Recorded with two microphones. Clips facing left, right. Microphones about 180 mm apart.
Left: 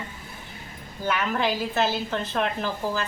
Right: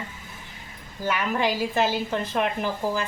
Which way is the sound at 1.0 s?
5° right (ahead or behind).